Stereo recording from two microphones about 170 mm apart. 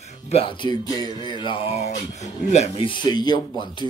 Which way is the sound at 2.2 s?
40° left (ahead or behind).